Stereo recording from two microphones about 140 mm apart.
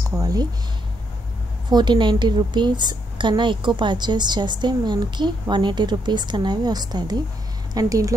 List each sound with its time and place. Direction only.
0.1 s speech: 25° right (ahead or behind)
1.7 s a woman's voice: 30° right (ahead or behind)